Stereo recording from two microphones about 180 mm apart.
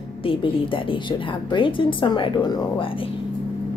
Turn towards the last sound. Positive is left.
turn(degrees=30)  # may be behind; listen again after turning